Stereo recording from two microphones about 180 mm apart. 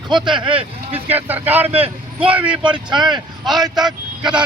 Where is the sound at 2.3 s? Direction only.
5° right (ahead or behind).